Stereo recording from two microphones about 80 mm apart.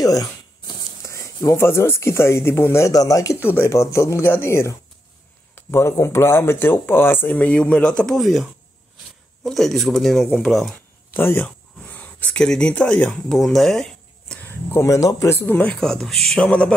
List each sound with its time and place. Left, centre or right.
0.0 s a sound: left
1.0 s speech: left
2.9 s speech: left
3.3 s speech: left
3.6 s speech: left; by 10.8 s centre
11.1 s speech: left
13.3 s speech: centre
14.4 s a sound: left
14.9 s speech: left
15.3 s speech: left
15.6 s speech: centre